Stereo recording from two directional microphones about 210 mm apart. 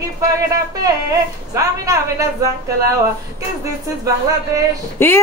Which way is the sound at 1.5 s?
15° right (ahead or behind).